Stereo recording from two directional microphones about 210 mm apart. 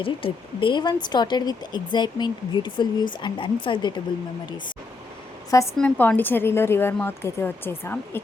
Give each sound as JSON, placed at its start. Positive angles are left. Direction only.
{"t": 0.0, "sound": "speech", "side_deg": 25}
{"t": 5.5, "sound": "a woman's voice", "side_deg": 10}